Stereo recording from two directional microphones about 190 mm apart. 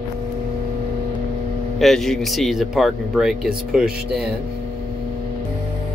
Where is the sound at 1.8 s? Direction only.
Centre (ahead or behind).